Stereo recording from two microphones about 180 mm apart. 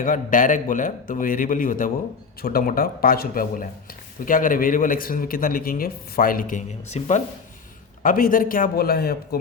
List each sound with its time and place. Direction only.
0.0 s a man's voice: 50° left (ahead or behind)
8.0 s a man's voice: 50° left (ahead or behind)